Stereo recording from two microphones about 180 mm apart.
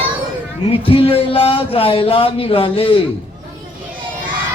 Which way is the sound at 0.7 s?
30° left (ahead or behind).